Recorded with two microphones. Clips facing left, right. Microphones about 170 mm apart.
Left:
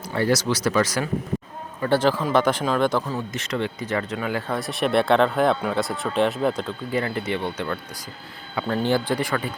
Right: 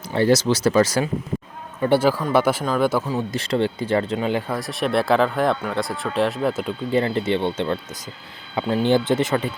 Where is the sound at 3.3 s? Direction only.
30° right (ahead or behind).